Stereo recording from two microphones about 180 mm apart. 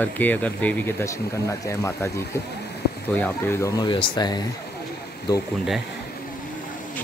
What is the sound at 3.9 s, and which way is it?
Speech, 30° left (ahead or behind).